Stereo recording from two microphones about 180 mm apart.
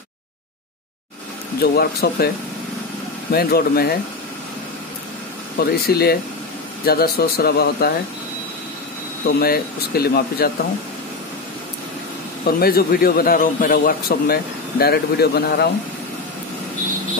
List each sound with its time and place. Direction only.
1.6 s speech: 60° left (ahead or behind)
5.6 s speech: 60° left (ahead or behind)
9.4 s speech: 60° left (ahead or behind)
12.4 s speech: 55° left (ahead or behind)